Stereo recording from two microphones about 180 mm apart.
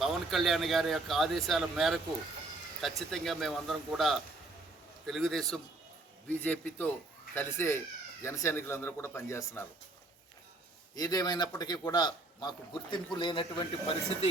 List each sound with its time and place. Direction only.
0.0 s speech: centre (ahead or behind); by 9.6 s 15° left (ahead or behind)
10.9 s a man's voice: 20° left (ahead or behind)